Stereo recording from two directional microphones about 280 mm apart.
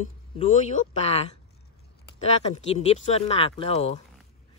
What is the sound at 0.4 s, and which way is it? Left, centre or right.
Speech, left.